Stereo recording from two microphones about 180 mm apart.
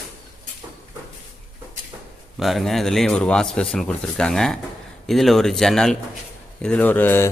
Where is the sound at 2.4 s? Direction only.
Centre (ahead or behind).